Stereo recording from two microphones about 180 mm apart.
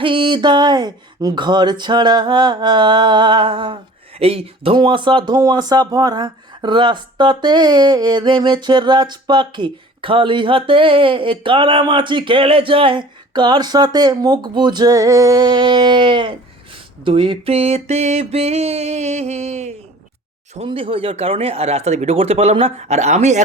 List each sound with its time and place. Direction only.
0.0 s speech: 30° right (ahead or behind)